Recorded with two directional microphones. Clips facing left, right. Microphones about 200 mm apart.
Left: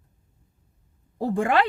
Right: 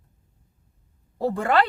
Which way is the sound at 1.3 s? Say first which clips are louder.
Left 1 dB; 15° left (ahead or behind).